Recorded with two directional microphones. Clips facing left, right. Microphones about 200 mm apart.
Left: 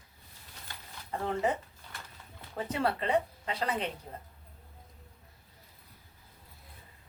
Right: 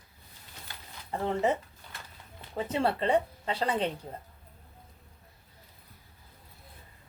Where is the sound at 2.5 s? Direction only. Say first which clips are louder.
Right 3 dB; 25° right (ahead or behind).